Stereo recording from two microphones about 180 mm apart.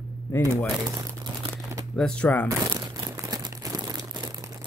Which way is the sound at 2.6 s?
20° right (ahead or behind).